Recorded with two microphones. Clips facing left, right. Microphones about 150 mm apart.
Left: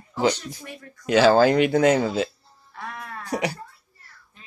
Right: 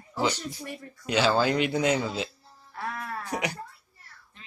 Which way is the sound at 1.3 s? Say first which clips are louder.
Left 7 dB; 50° left (ahead or behind).